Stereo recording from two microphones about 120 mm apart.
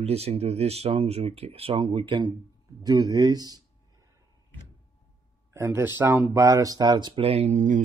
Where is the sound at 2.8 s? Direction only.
30° right (ahead or behind).